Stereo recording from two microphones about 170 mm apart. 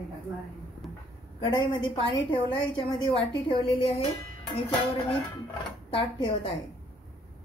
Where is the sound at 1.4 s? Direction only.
30° left (ahead or behind).